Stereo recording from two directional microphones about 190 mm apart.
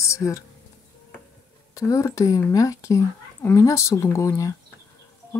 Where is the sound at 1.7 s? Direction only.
15° left (ahead or behind).